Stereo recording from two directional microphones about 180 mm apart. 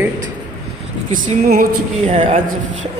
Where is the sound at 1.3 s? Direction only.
50° right (ahead or behind).